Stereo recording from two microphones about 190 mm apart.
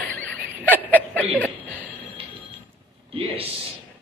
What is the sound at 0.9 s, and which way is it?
Chuckle, 10° left (ahead or behind).